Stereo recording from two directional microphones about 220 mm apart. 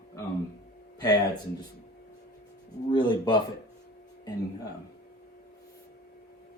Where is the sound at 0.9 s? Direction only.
15° left (ahead or behind).